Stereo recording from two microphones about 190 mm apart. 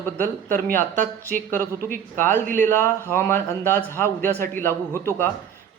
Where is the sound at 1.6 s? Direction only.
50° right (ahead or behind).